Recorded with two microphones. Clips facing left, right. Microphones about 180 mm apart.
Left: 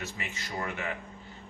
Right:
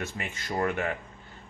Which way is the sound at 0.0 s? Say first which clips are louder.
Right 3 dB; 55° right (ahead or behind).